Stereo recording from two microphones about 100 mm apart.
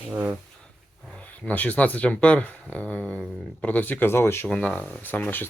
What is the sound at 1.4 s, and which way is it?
Speech, 15° left (ahead or behind).